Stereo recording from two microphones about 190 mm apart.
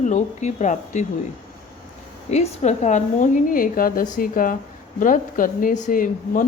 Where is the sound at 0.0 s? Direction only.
40° left (ahead or behind).